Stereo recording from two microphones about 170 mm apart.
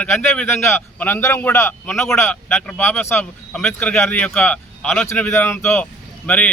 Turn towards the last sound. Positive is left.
turn(degrees=10)  # may be behind; listen again after turning